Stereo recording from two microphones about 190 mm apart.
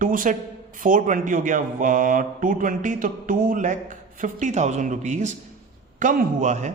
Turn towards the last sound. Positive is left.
turn(degrees=-40)  # may be behind; listen again after turning